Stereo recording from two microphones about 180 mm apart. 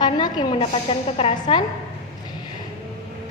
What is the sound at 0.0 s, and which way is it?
A woman's voice, 25° left (ahead or behind).